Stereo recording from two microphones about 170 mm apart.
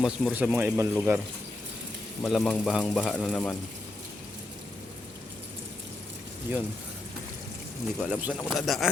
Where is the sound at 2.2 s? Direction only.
Centre (ahead or behind).